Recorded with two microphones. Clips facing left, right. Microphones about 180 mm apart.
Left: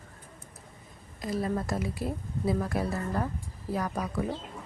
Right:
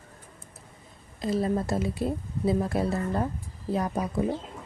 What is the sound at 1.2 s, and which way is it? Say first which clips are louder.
Speech: right 4 dB; 25° right (ahead or behind).